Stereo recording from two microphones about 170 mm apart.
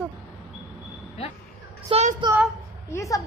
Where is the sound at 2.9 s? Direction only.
20° left (ahead or behind).